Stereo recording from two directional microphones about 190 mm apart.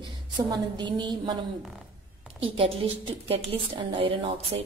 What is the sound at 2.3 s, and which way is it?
Speech, 30° right (ahead or behind).